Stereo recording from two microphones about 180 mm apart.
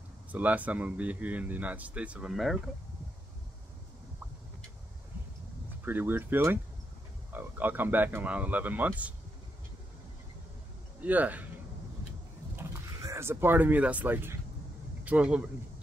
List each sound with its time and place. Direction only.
0.3 s a man's voice: 10° right (ahead or behind)
5.9 s a man's voice: 10° right (ahead or behind)
11.0 s a man's voice: 10° right (ahead or behind)
12.5 s a man's voice: 15° right (ahead or behind)